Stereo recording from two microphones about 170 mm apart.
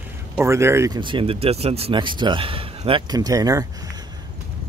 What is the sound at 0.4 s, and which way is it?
Speech, 15° right (ahead or behind).